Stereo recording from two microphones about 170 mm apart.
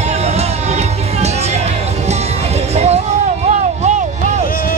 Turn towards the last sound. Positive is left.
turn(degrees=-45)  # may be behind; listen again after turning